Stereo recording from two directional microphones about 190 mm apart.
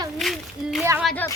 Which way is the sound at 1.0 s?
10° left (ahead or behind).